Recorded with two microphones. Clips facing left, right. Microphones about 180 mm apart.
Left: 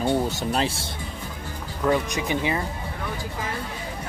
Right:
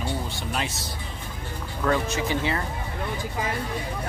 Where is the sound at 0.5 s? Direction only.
30° left (ahead or behind).